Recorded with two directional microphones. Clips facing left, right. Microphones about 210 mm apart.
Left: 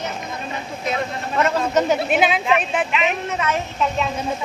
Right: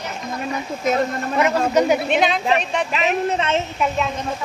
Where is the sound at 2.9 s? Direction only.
40° right (ahead or behind).